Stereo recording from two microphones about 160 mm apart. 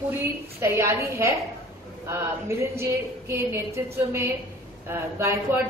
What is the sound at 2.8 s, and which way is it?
A woman's voice, 15° right (ahead or behind).